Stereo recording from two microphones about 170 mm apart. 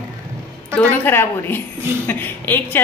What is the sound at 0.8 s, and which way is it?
A woman's voice, 10° left (ahead or behind).